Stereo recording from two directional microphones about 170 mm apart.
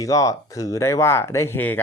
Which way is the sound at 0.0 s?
20° left (ahead or behind).